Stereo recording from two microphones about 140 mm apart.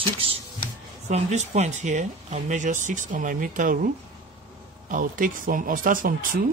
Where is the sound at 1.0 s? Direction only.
55° right (ahead or behind); by 3.8 s 75° right (ahead or behind).